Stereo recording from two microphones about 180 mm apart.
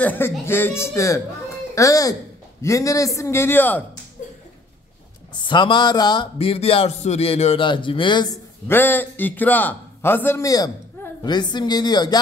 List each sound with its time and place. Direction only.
0.0 s a man's voice: 10° left (ahead or behind)
5.5 s a man's voice: 25° left (ahead or behind)
8.6 s a man's voice: 10° left (ahead or behind)